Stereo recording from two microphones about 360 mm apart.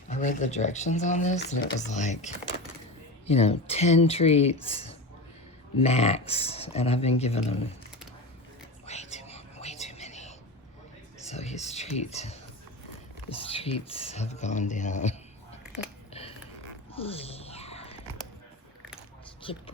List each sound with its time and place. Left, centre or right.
0.1 s speech: left
8.9 s whispering: centre
11.3 s speech: centre
17.0 s whispering: centre
19.4 s speech: centre